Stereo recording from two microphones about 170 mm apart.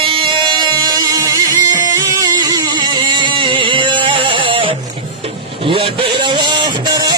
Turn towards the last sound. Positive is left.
turn(degrees=-25)  # may be behind; listen again after turning